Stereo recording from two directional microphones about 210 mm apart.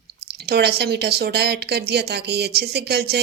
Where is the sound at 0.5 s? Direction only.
50° right (ahead or behind).